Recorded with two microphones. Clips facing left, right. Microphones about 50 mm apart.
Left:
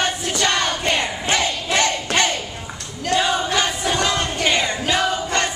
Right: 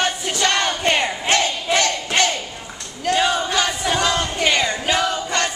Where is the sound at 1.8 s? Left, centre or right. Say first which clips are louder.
Left 1 dB; centre.